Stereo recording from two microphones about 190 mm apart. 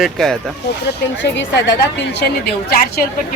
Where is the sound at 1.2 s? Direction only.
70° left (ahead or behind).